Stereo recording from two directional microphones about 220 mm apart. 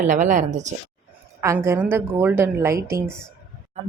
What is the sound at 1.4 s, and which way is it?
A woman's voice, 10° right (ahead or behind).